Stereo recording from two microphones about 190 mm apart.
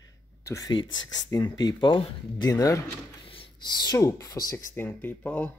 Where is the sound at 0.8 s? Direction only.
85° left.